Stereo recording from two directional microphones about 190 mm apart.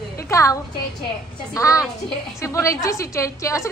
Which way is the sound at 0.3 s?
15° left (ahead or behind).